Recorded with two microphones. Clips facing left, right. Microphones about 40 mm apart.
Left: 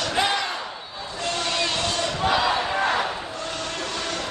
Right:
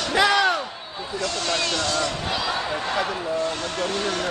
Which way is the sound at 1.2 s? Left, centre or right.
Left.